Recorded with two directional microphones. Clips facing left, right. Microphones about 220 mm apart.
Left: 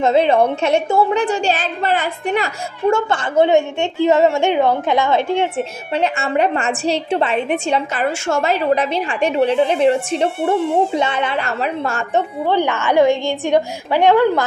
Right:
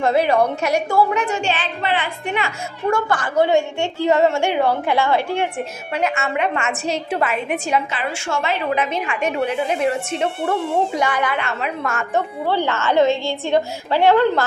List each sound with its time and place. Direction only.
0.0 s a woman's voice: 25° left (ahead or behind); by 2.5 s 40° left (ahead or behind)
2.9 s a woman's voice: 25° left (ahead or behind)
5.9 s a woman's voice: 30° left (ahead or behind)
7.9 s a woman's voice: 40° left (ahead or behind); by 14.4 s 15° left (ahead or behind)